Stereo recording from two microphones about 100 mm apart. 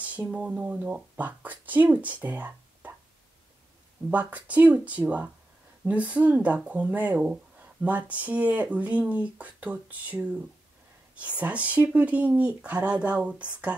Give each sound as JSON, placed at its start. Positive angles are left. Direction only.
{"t": 0.0, "sound": "speech", "side_deg": -15}
{"t": 4.1, "sound": "speech", "side_deg": -15}